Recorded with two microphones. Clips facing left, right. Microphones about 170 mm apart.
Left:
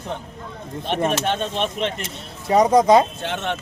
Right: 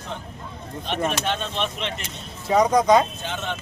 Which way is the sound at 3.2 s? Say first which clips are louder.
Left 4 dB; 70° left (ahead or behind).